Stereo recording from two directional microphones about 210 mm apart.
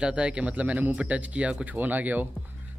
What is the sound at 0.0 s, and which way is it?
Speech, 5° right (ahead or behind).